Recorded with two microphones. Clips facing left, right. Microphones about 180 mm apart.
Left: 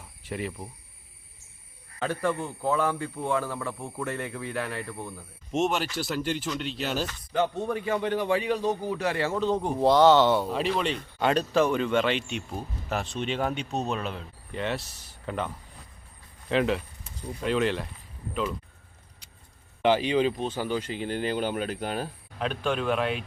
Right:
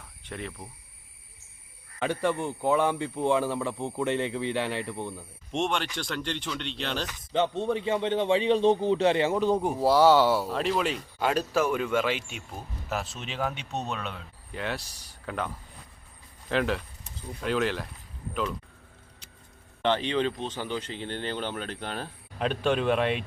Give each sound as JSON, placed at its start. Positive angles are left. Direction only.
{"t": 0.2, "sound": "speech", "side_deg": 5}
{"t": 2.0, "sound": "speech", "side_deg": -20}
{"t": 5.5, "sound": "speech", "side_deg": 5}
{"t": 7.3, "sound": "a man's voice", "side_deg": -25}
{"t": 16.5, "sound": "speech", "side_deg": 0}
{"t": 19.8, "sound": "speech", "side_deg": 10}